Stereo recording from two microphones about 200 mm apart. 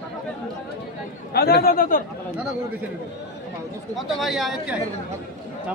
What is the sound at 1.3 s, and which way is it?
Speech, 50° left (ahead or behind).